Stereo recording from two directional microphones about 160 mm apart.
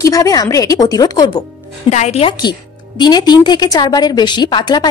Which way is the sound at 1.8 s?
45° left (ahead or behind).